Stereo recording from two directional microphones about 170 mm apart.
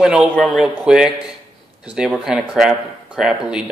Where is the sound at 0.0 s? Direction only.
5° right (ahead or behind).